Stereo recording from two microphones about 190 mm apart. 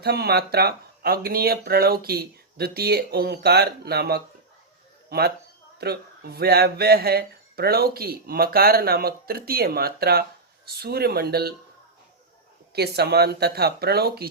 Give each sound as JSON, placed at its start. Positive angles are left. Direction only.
{"t": 0.0, "sound": "speech", "side_deg": -55}
{"t": 12.7, "sound": "speech", "side_deg": -55}